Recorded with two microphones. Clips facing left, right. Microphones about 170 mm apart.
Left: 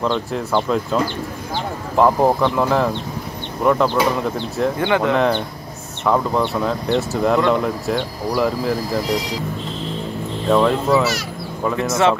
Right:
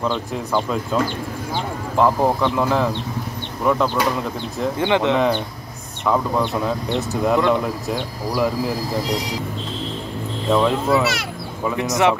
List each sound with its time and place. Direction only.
0.0 s speech: centre (ahead or behind)
2.0 s speech: centre (ahead or behind)
4.7 s speech: 20° right (ahead or behind)
5.1 s speech: 5° right (ahead or behind)
10.5 s speech: centre (ahead or behind)
11.7 s speech: 15° right (ahead or behind)